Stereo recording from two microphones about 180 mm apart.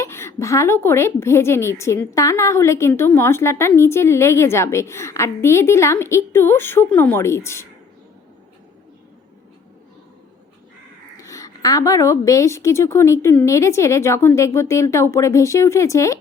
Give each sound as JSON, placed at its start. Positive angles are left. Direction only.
{"t": 0.0, "sound": "a woman's voice", "side_deg": 15}
{"t": 11.2, "sound": "a woman's voice", "side_deg": 20}